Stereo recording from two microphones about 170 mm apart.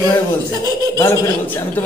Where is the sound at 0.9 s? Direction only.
15° left (ahead or behind).